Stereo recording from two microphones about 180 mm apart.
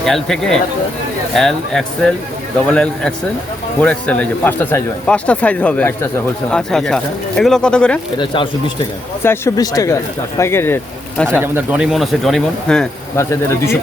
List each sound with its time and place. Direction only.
0.0 s a man's voice: centre (ahead or behind)
8.2 s speech: 25° left (ahead or behind)
9.2 s a man's voice: 15° left (ahead or behind)
11.3 s speech: 10° right (ahead or behind)
13.1 s a man's voice: 15° left (ahead or behind)